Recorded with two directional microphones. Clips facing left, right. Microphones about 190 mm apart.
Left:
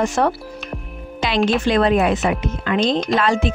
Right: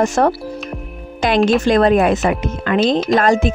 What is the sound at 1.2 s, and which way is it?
Music, 45° right (ahead or behind).